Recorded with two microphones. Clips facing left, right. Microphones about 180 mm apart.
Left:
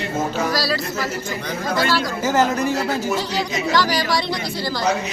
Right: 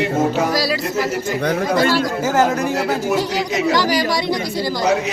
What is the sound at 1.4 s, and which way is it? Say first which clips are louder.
Speech: right 5 dB; 55° right (ahead or behind).